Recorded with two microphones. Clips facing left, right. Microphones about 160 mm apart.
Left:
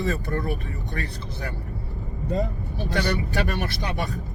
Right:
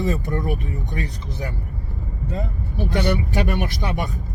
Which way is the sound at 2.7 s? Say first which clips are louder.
Right 4 dB; 15° right (ahead or behind).